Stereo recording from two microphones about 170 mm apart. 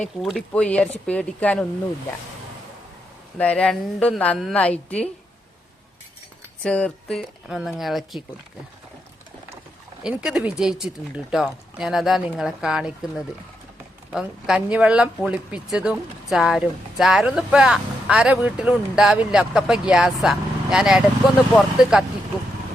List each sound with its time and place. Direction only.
0.0 s a woman's voice: 5° left (ahead or behind)
3.3 s a woman's voice: 5° left (ahead or behind)
6.6 s speech: 5° left (ahead or behind)
10.0 s speech: 5° right (ahead or behind)